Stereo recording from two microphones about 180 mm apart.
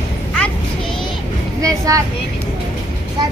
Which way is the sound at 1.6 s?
20° right (ahead or behind).